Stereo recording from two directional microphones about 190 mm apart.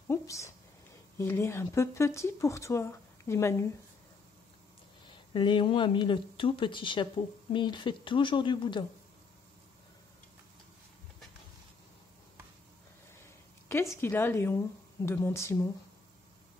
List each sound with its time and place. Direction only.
0.1 s speech: 15° left (ahead or behind)
5.3 s speech: 25° left (ahead or behind)
13.2 s a sound: 15° left (ahead or behind)
14.0 s speech: 10° left (ahead or behind)